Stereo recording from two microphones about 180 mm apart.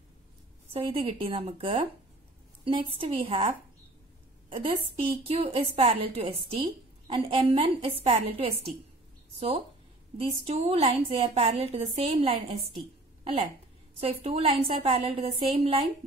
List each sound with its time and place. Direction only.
0.7 s a woman's voice: 30° right (ahead or behind)
4.5 s a woman's voice: 30° right (ahead or behind)
10.1 s a woman's voice: 35° right (ahead or behind)